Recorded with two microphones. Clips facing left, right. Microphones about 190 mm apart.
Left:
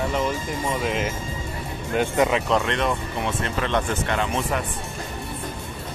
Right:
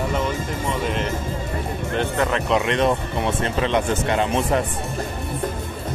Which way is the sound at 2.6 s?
15° right (ahead or behind).